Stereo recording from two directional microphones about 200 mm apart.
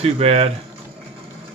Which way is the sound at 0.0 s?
30° right (ahead or behind).